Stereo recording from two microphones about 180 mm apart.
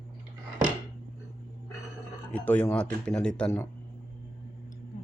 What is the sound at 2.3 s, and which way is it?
Speech, 10° left (ahead or behind).